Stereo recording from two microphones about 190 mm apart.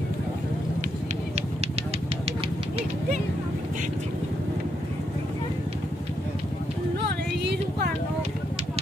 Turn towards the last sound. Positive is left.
turn(degrees=-65)  # may be behind; listen again after turning